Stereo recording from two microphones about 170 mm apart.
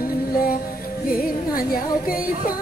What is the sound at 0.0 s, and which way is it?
Music, 60° left (ahead or behind).